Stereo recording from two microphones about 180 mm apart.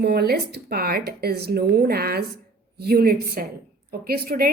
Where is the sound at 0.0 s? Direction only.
60° right (ahead or behind).